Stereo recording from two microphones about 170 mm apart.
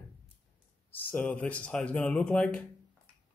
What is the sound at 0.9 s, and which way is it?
A man's voice, 10° left (ahead or behind).